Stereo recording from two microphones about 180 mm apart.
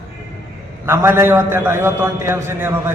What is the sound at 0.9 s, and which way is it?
A man's voice, 15° right (ahead or behind).